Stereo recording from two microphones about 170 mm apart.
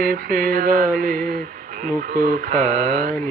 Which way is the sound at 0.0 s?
60° right (ahead or behind).